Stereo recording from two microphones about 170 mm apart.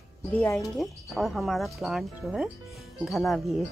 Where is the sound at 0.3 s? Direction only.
10° left (ahead or behind).